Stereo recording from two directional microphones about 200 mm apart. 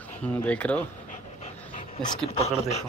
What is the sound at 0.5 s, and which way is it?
Speech, 5° left (ahead or behind).